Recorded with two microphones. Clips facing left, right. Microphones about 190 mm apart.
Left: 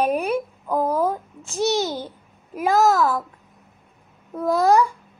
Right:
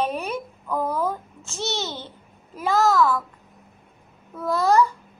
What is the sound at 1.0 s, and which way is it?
Speech, 15° left (ahead or behind).